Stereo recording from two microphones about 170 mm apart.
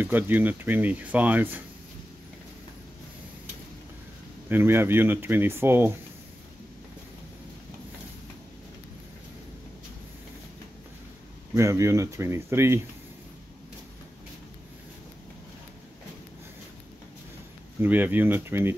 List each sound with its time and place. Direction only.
0.0 s speech: 10° right (ahead or behind)
4.5 s speech: 15° right (ahead or behind)
11.5 s speech: 15° right (ahead or behind)
17.7 s speech: 10° right (ahead or behind)